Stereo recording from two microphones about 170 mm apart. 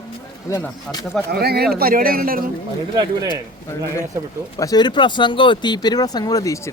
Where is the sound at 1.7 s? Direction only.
60° right (ahead or behind).